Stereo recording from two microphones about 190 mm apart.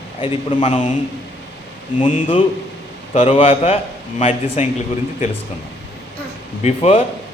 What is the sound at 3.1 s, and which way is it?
A man's voice, 35° left (ahead or behind).